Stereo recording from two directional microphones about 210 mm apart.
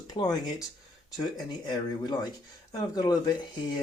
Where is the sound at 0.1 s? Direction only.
20° left (ahead or behind).